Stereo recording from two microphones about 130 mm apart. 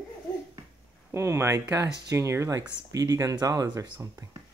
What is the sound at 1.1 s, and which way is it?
Speech, 20° right (ahead or behind).